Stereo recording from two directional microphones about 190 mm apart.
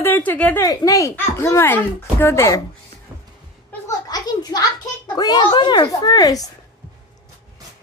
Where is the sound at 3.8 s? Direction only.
20° left (ahead or behind).